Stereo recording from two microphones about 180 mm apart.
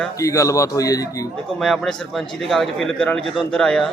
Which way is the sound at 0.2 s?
15° left (ahead or behind).